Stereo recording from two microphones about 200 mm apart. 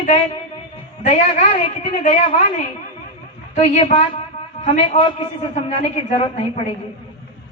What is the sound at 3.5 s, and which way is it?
A woman's voice, 30° left (ahead or behind).